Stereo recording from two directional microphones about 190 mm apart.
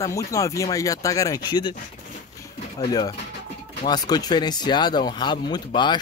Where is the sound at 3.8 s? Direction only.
20° left (ahead or behind).